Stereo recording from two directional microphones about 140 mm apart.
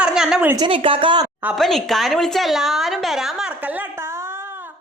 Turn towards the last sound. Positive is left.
turn(degrees=-10)  # may be behind; listen again after turning